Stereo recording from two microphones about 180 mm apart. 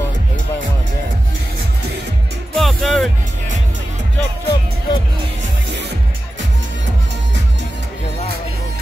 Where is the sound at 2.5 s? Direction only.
Centre (ahead or behind).